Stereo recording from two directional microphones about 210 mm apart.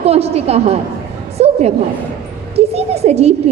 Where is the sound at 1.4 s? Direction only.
30° right (ahead or behind).